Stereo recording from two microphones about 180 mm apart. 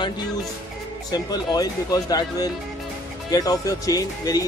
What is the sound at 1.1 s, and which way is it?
Speech, 20° left (ahead or behind).